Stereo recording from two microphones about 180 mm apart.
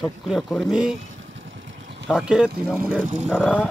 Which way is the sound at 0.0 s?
Centre (ahead or behind).